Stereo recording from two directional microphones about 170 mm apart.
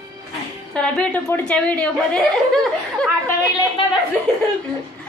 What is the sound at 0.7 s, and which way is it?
A woman's voice, 5° left (ahead or behind).